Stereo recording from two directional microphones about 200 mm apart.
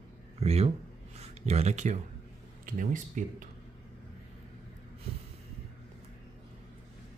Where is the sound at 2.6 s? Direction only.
40° right (ahead or behind).